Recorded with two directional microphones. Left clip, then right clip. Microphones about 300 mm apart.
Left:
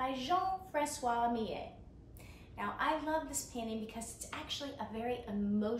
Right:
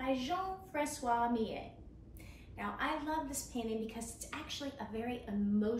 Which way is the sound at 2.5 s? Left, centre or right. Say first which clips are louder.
Left 3 dB; centre.